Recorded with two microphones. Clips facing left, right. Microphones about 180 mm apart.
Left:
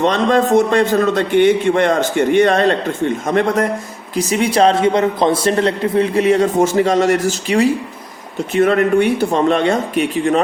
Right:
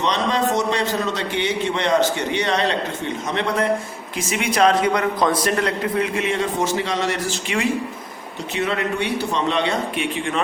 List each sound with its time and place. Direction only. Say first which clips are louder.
0.0 s a man's voice: left 7 dB; 50° left (ahead or behind)
8.5 s a man's voice: left 10 dB; 50° left (ahead or behind)